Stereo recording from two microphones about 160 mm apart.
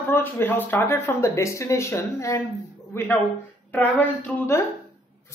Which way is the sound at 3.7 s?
10° left (ahead or behind).